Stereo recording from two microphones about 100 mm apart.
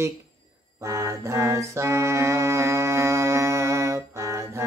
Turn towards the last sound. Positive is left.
turn(degrees=-30)  # may be behind; listen again after turning